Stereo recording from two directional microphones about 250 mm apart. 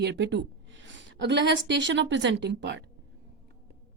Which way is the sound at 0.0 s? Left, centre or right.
Right.